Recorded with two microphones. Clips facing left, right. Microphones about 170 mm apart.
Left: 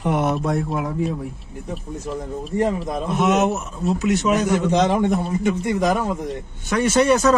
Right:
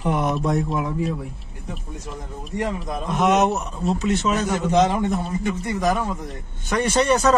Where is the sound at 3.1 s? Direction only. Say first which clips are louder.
Even; centre (ahead or behind); by 5.9 s 20° left (ahead or behind).